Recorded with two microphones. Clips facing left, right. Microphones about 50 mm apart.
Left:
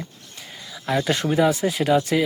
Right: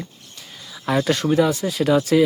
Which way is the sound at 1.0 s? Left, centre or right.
Centre.